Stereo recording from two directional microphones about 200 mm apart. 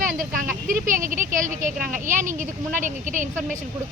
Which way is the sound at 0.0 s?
40° right (ahead or behind).